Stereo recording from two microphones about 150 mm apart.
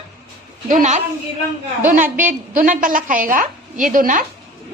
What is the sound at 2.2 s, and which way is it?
A woman's voice, 60° right (ahead or behind).